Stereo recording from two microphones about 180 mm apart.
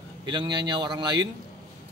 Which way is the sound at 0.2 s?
25° right (ahead or behind).